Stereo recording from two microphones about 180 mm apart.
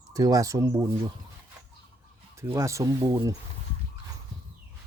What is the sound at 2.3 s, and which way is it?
Speech, 15° right (ahead or behind).